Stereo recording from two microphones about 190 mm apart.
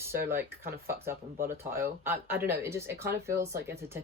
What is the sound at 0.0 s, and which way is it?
Speech, 15° right (ahead or behind).